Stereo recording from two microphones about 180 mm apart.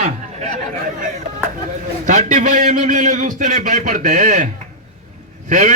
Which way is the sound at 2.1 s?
45° right (ahead or behind).